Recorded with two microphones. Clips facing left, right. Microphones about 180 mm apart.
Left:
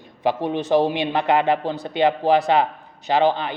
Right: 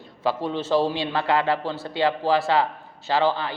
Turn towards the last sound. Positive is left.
turn(degrees=20)  # may be behind; listen again after turning